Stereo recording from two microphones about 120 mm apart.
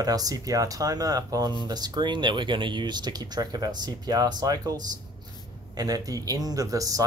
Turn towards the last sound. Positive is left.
turn(degrees=-30)  # may be behind; listen again after turning